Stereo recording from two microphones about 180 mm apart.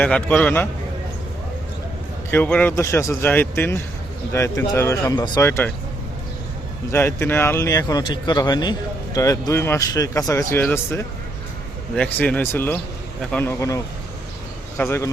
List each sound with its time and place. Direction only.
0.0 s speech: 5° left (ahead or behind)
2.3 s speech: 10° left (ahead or behind)
6.9 s speech: 15° left (ahead or behind)